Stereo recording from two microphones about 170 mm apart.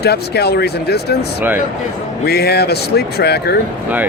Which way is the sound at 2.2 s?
70° left (ahead or behind).